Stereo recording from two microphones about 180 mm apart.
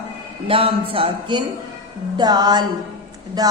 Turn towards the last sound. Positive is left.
turn(degrees=-20)  # may be behind; listen again after turning